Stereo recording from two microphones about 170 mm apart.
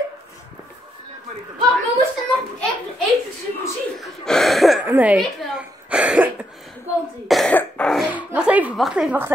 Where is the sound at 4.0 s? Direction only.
Centre (ahead or behind).